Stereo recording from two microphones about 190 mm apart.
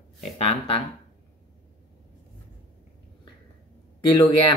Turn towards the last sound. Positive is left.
turn(degrees=25)  # may be behind; listen again after turning